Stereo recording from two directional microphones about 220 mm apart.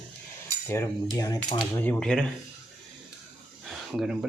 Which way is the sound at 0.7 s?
15° left (ahead or behind).